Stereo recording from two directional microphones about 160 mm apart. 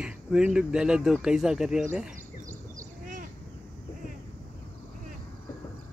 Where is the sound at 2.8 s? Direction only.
55° right (ahead or behind).